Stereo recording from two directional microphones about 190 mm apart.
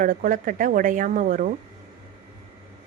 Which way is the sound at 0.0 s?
45° right (ahead or behind).